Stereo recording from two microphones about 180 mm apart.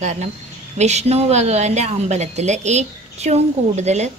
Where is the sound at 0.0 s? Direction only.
40° right (ahead or behind).